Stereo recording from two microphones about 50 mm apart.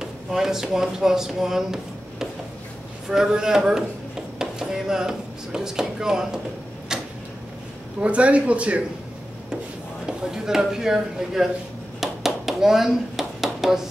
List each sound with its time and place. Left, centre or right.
0.0 s speech: centre
6.9 s tick-tock: centre
8.0 s speech: right
10.0 s speech: centre
12.0 s a sound: centre